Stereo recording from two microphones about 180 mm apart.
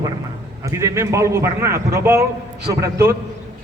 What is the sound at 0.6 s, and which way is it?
A man's voice, 15° right (ahead or behind).